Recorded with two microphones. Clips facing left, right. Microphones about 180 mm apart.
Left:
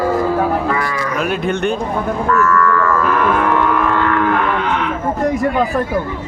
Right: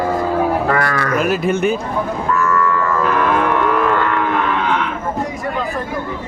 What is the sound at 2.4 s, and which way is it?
Cattle, 15° right (ahead or behind).